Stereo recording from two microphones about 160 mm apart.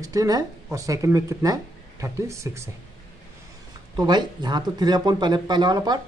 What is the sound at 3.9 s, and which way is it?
Speech, 25° right (ahead or behind).